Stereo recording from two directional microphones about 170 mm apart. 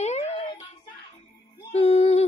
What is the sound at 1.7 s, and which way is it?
Music, 40° left (ahead or behind).